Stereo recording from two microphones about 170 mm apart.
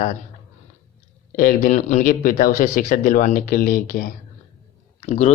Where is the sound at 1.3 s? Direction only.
55° left (ahead or behind).